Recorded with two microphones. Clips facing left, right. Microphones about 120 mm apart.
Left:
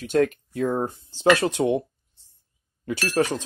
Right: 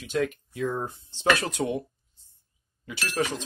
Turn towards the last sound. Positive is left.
turn(degrees=50)  # may be behind; listen again after turning